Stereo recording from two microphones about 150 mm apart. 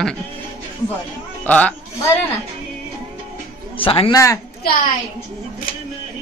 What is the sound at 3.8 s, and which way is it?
Speech, 35° left (ahead or behind).